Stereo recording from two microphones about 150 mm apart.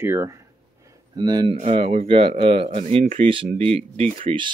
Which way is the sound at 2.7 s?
50° right (ahead or behind).